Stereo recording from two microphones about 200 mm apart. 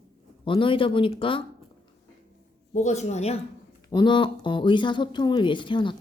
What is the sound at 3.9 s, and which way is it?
Speech, 20° left (ahead or behind).